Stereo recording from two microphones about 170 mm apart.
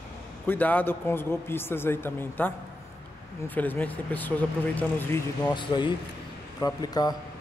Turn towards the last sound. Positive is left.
turn(degrees=25)  # may be behind; listen again after turning